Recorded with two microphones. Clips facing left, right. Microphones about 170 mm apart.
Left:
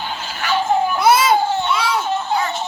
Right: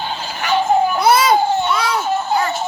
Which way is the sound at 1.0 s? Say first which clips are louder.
Left 1 dB; 5° left (ahead or behind).